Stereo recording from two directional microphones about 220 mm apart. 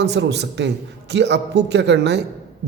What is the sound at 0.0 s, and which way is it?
Speech, 50° right (ahead or behind).